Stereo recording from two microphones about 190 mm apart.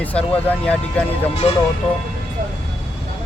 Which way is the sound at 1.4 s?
30° left (ahead or behind).